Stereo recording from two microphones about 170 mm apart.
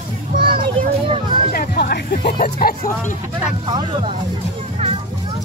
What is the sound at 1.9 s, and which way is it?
Speech, 65° left (ahead or behind).